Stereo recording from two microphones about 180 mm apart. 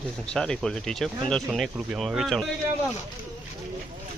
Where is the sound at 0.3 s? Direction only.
5° left (ahead or behind).